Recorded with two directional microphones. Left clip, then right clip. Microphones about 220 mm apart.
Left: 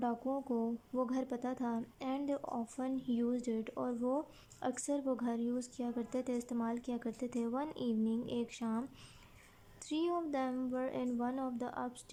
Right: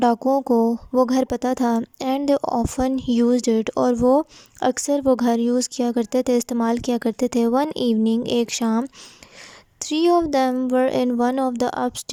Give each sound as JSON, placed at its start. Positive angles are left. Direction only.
{"t": 0.0, "sound": "speech", "side_deg": -40}